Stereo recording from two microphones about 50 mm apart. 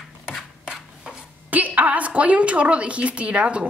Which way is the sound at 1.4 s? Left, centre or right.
Right.